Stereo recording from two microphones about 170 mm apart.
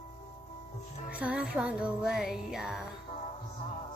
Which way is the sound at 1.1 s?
10° right (ahead or behind).